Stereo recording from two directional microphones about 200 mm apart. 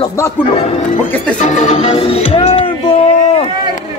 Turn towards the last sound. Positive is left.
turn(degrees=30)  # may be behind; listen again after turning